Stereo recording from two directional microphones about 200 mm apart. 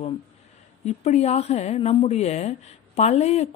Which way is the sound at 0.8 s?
30° left (ahead or behind).